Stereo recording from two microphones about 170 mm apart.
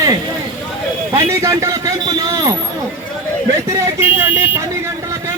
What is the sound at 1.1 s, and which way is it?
Speech, 20° right (ahead or behind).